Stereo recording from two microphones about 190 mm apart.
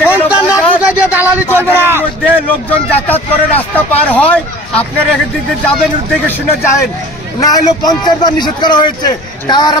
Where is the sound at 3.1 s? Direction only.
10° left (ahead or behind).